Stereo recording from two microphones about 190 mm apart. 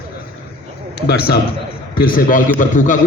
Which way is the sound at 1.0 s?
55° left (ahead or behind).